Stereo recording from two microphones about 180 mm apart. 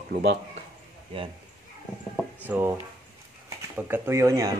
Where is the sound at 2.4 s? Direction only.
10° right (ahead or behind).